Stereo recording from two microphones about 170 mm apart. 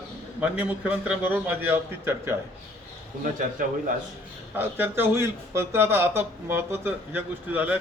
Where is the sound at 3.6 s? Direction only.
50° right (ahead or behind).